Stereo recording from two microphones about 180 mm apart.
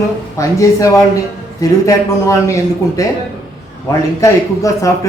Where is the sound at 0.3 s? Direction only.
20° left (ahead or behind).